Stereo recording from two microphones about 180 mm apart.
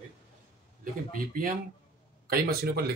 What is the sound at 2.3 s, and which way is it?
Speech, 60° right (ahead or behind).